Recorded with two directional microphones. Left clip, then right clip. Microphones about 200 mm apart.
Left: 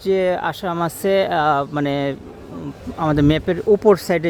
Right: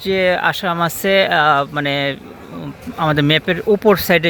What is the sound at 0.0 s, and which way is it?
Speech, 15° left (ahead or behind).